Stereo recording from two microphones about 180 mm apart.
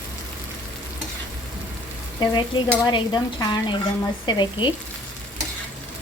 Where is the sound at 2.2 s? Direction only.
25° left (ahead or behind).